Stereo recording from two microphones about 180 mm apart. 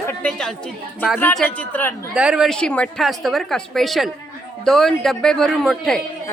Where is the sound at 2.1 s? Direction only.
5° right (ahead or behind).